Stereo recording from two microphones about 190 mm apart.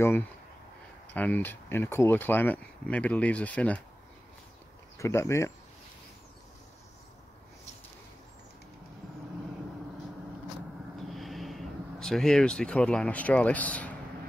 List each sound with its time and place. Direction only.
1.1 s speech: 10° left (ahead or behind)
4.9 s speech: 15° left (ahead or behind)
11.0 s a sound: centre (ahead or behind)